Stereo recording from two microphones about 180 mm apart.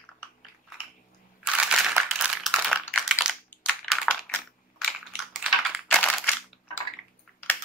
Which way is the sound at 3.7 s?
Centre (ahead or behind).